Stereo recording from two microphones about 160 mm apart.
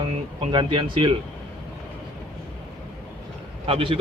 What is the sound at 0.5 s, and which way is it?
Speech, 30° right (ahead or behind).